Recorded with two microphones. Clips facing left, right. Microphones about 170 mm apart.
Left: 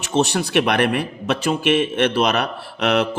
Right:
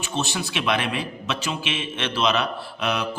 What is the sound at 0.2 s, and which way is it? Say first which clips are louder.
A man's voice: left 10 dB; 65° left (ahead or behind).